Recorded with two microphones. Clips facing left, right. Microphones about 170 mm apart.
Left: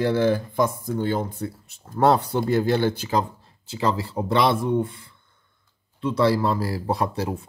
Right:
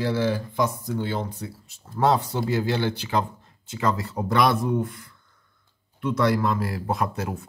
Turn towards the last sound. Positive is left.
turn(degrees=30)  # may be behind; listen again after turning